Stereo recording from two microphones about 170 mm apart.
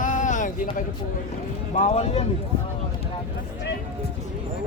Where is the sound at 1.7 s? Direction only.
40° left (ahead or behind).